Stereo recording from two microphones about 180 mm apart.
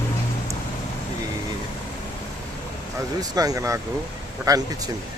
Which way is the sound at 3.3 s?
20° right (ahead or behind).